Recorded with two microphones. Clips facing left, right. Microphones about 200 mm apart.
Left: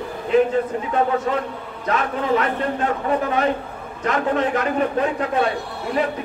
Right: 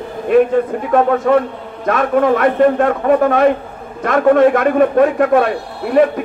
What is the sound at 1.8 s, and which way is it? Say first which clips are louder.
A man's voice: right 9 dB; 55° right (ahead or behind).